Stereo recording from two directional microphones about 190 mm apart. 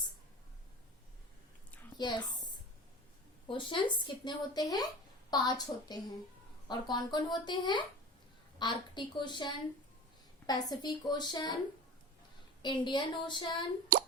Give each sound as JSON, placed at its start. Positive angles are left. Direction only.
{"t": 2.0, "sound": "speech", "side_deg": 25}
{"t": 3.5, "sound": "speech", "side_deg": 25}
{"t": 12.6, "sound": "speech", "side_deg": 25}
{"t": 13.9, "sound": "plop", "side_deg": -45}